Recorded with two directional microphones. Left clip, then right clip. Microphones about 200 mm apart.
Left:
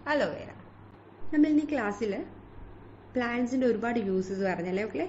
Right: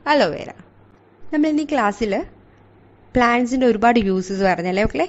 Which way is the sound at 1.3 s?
45° right (ahead or behind).